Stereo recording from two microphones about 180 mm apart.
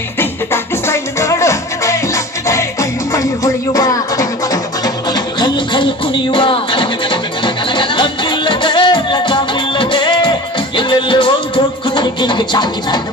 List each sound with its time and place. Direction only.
0.2 s music: 15° left (ahead or behind)